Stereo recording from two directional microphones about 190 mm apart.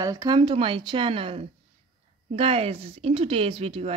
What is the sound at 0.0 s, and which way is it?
Speech, 20° right (ahead or behind).